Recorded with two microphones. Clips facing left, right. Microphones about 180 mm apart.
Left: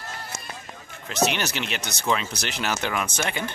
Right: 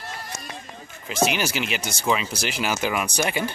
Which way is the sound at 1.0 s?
5° right (ahead or behind).